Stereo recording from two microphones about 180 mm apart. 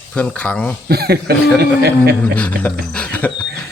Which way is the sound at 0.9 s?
60° right (ahead or behind).